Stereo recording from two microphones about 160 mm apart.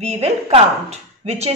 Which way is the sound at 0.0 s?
45° right (ahead or behind).